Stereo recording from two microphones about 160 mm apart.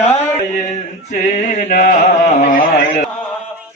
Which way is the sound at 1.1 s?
55° left (ahead or behind).